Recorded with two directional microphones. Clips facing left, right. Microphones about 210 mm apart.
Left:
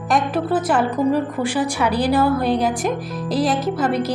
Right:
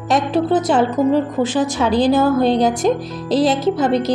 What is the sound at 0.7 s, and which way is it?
A woman's voice, 25° right (ahead or behind).